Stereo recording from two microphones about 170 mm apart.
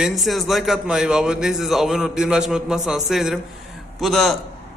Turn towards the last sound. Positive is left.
turn(degrees=0)  # may be behind; listen again after turning